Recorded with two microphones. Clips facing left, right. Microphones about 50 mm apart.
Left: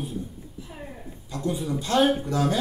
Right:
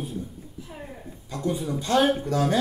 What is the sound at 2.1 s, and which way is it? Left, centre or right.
Speech, centre.